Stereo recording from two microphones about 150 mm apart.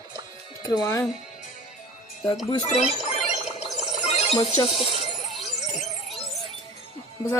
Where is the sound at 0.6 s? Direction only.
25° left (ahead or behind).